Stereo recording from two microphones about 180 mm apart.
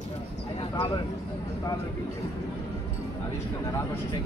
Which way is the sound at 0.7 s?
20° left (ahead or behind).